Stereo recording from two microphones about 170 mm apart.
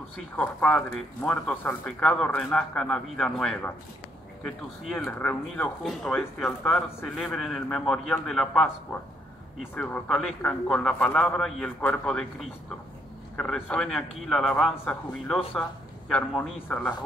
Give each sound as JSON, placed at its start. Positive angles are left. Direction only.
{"t": 0.4, "sound": "speech", "side_deg": 5}
{"t": 9.8, "sound": "speech", "side_deg": 5}